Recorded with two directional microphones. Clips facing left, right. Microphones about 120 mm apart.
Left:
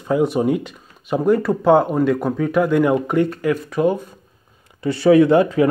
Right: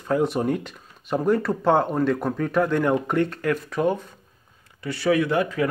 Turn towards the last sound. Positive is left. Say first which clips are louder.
# left 9 dB
turn(degrees=25)  # may be behind; listen again after turning